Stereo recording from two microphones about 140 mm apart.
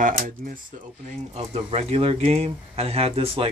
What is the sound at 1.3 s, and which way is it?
Speech, 50° right (ahead or behind).